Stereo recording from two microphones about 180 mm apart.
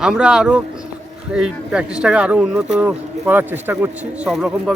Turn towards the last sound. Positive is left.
turn(degrees=-5)  # may be behind; listen again after turning